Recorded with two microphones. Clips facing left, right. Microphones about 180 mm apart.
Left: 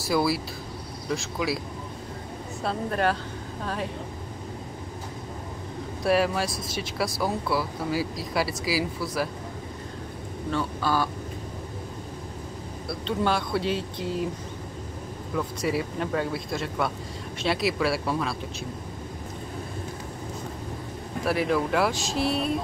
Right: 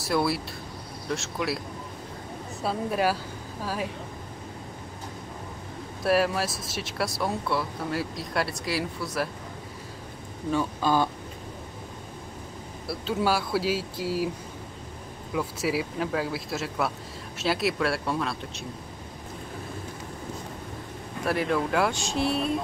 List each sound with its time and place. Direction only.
0.0 s speech: centre (ahead or behind)
2.6 s speech: 5° right (ahead or behind)
6.0 s speech: centre (ahead or behind)
10.5 s speech: 15° right (ahead or behind)
12.8 s speech: 5° right (ahead or behind)
15.3 s speech: 5° right (ahead or behind)
21.2 s speech: centre (ahead or behind)